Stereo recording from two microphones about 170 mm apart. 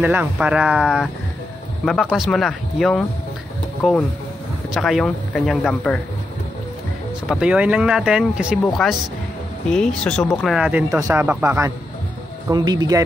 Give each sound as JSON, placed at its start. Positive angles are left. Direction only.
{"t": 0.0, "sound": "speech", "side_deg": -10}
{"t": 4.7, "sound": "speech", "side_deg": 0}
{"t": 7.2, "sound": "speech", "side_deg": -5}
{"t": 12.4, "sound": "speech", "side_deg": -25}